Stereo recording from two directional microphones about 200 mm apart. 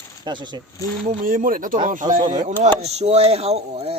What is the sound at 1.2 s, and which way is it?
Speech, 45° right (ahead or behind).